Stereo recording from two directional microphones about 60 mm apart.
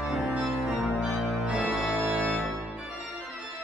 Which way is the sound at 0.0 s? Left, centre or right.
Centre.